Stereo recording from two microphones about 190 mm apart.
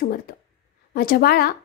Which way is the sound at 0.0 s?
55° left (ahead or behind).